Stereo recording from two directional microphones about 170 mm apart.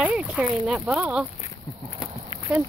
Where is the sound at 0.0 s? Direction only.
5° right (ahead or behind).